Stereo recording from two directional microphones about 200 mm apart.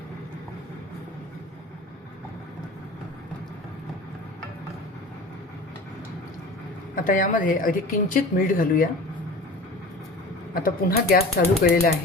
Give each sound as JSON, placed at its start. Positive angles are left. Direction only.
{"t": 6.9, "sound": "a woman's voice", "side_deg": 40}
{"t": 10.5, "sound": "a woman's voice", "side_deg": 45}